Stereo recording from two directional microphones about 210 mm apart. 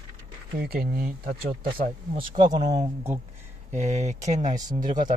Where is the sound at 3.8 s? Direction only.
30° right (ahead or behind).